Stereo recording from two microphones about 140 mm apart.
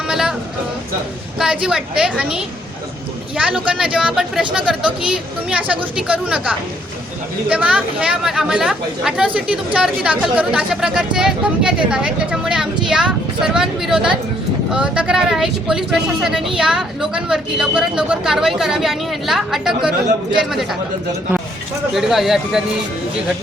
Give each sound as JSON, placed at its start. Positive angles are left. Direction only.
{"t": 0.1, "sound": "a sound", "side_deg": -5}
{"t": 1.4, "sound": "speech", "side_deg": -5}
{"t": 21.9, "sound": "speech", "side_deg": 0}